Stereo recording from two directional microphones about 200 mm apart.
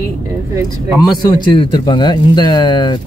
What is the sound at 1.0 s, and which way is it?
Speech, 20° left (ahead or behind).